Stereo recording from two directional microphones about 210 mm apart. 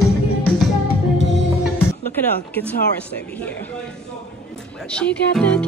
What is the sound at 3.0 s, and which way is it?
Speech, 5° left (ahead or behind).